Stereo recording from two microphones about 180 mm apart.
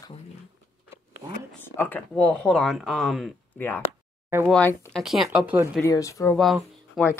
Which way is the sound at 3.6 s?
10° left (ahead or behind).